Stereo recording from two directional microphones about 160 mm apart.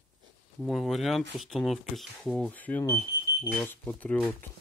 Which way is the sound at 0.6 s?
Centre (ahead or behind).